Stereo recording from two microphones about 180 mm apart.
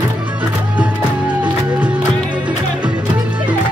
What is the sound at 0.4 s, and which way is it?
Music, 5° right (ahead or behind).